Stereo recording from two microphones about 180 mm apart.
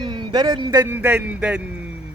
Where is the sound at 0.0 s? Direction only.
25° right (ahead or behind).